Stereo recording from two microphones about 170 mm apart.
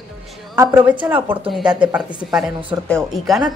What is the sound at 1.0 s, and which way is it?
A woman's voice, 10° right (ahead or behind).